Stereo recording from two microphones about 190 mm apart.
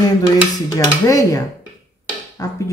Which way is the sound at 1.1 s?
15° left (ahead or behind).